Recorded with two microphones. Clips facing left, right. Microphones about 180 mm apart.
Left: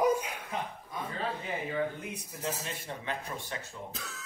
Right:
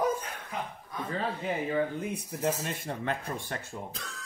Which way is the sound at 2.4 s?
50° right (ahead or behind).